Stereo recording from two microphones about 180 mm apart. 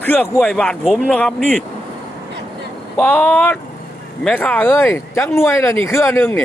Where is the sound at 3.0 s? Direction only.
10° left (ahead or behind).